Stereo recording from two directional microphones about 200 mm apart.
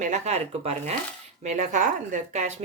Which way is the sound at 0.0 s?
35° right (ahead or behind).